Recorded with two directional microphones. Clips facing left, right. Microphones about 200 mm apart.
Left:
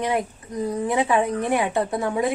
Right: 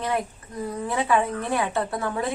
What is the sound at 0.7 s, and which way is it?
A woman's voice, 20° left (ahead or behind).